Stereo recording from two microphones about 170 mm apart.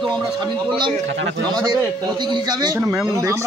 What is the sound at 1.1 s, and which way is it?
Speech, 90° right.